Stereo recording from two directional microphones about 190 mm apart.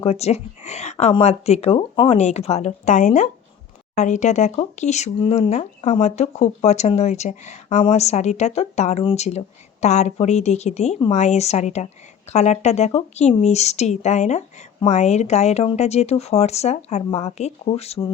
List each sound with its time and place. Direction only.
0.0 s speech: 35° left (ahead or behind)